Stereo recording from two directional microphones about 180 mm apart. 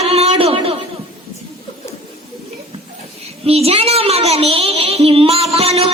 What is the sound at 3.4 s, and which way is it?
A child's voice, 35° right (ahead or behind).